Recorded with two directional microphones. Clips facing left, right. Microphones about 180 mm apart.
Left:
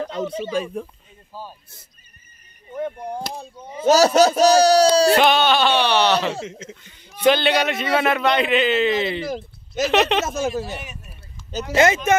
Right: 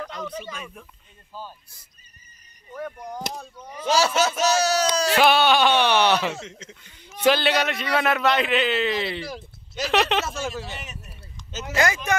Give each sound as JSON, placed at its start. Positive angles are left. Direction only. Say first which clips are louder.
{"t": 0.0, "sound": "speech", "louder": "left 7 dB", "side_deg": 30}
{"t": 1.3, "sound": "speech", "louder": "left 2 dB", "side_deg": 15}
{"t": 2.7, "sound": "speech", "louder": "left 6 dB", "side_deg": 25}
{"t": 3.8, "sound": "speech", "louder": "left 7 dB", "side_deg": 40}
{"t": 5.1, "sound": "a man's voice", "louder": "left 2 dB", "side_deg": -5}
{"t": 7.5, "sound": "a man's voice", "louder": "left 3 dB", "side_deg": 5}
{"t": 9.2, "sound": "speech", "louder": "left 7 dB", "side_deg": 45}
{"t": 9.8, "sound": "a man's voice", "louder": "left 3 dB", "side_deg": 0}
{"t": 10.2, "sound": "speech", "louder": "left 7 dB", "side_deg": 40}
{"t": 10.8, "sound": "a sound", "louder": "left 2 dB", "side_deg": 0}
{"t": 11.7, "sound": "speech", "louder": "left 6 dB", "side_deg": 20}